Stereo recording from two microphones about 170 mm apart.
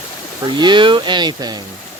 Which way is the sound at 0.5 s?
25° right (ahead or behind).